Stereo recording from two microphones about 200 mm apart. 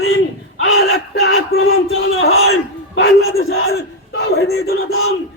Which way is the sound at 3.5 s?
90° left.